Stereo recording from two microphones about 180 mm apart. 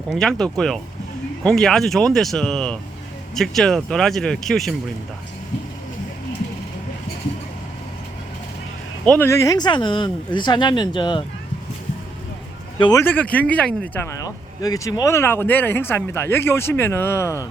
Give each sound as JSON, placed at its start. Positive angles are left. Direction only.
{"t": 0.1, "sound": "speech", "side_deg": 5}
{"t": 9.0, "sound": "speech", "side_deg": 10}
{"t": 12.8, "sound": "speech", "side_deg": 15}
{"t": 14.3, "sound": "speech", "side_deg": 20}